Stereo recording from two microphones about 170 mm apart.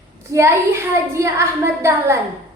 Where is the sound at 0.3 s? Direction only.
15° right (ahead or behind).